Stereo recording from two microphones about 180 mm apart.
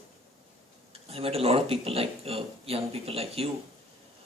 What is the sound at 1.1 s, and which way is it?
Speech, 35° right (ahead or behind).